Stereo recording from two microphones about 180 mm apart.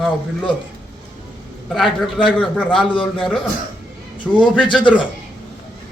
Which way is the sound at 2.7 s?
30° left (ahead or behind).